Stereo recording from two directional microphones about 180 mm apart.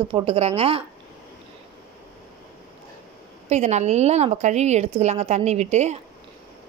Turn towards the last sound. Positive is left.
turn(degrees=-40)  # may be behind; listen again after turning